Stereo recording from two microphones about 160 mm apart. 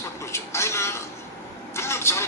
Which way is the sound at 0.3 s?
15° left (ahead or behind).